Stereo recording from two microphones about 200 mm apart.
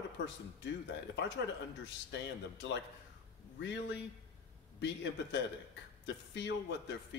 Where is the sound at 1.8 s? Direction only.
65° left (ahead or behind).